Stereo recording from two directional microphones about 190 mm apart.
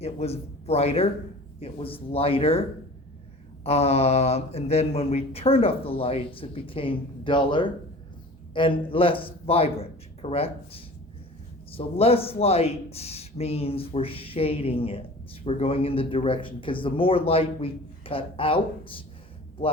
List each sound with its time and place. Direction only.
0.0 s a man's voice: 35° left (ahead or behind)